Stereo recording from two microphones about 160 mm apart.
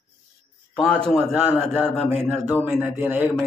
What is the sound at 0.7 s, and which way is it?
Speech, 5° left (ahead or behind).